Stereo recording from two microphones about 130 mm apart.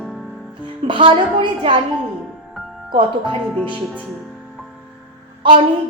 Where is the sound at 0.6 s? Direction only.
40° right (ahead or behind).